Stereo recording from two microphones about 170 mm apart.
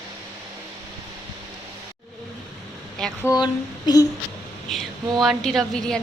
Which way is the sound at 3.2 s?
25° left (ahead or behind).